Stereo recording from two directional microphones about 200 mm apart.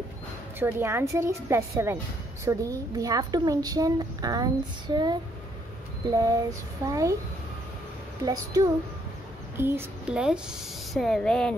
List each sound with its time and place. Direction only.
0.6 s a woman's voice: 10° right (ahead or behind)
8.3 s a woman's voice: 15° right (ahead or behind); by 11.5 s 5° left (ahead or behind)